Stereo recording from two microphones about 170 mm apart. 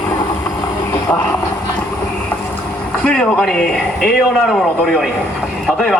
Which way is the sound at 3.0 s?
5° left (ahead or behind).